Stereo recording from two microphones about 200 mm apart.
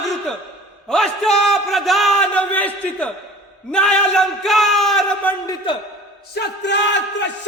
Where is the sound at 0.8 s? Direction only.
5° left (ahead or behind).